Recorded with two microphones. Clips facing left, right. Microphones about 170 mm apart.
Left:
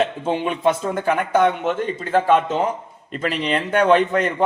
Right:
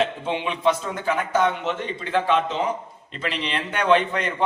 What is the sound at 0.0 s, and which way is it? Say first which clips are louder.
A man's voice: left 3 dB; 45° left (ahead or behind).